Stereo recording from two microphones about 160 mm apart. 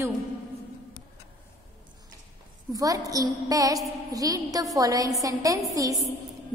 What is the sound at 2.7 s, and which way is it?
A woman's voice, 20° right (ahead or behind).